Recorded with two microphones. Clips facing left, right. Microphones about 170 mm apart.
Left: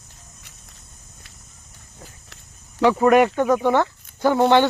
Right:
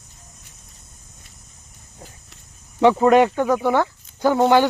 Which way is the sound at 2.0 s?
25° right (ahead or behind).